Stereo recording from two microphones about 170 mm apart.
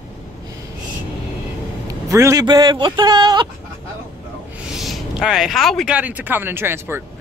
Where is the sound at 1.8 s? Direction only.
20° right (ahead or behind).